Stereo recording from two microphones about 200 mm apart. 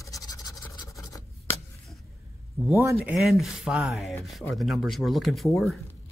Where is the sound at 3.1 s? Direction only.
Centre (ahead or behind).